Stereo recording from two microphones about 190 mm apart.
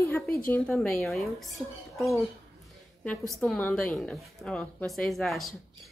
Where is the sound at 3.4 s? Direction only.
10° left (ahead or behind).